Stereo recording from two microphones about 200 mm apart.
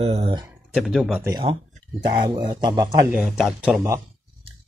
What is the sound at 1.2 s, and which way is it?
Speech, 20° right (ahead or behind).